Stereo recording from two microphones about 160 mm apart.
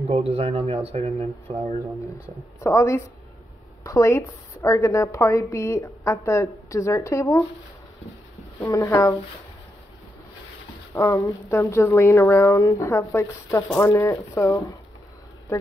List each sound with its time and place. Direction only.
0.1 s speech: 40° right (ahead or behind)
2.6 s a woman's voice: 15° left (ahead or behind)
8.5 s a woman's voice: 20° left (ahead or behind)
11.0 s a woman's voice: 20° left (ahead or behind)